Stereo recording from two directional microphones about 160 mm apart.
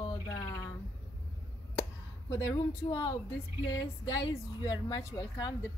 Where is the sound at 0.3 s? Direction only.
20° left (ahead or behind).